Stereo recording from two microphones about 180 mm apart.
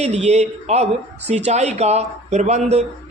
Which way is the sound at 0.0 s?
35° right (ahead or behind).